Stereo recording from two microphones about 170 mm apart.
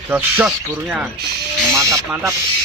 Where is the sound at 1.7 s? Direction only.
20° right (ahead or behind).